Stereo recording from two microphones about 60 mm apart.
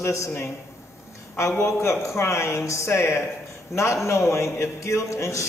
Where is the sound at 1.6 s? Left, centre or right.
Left.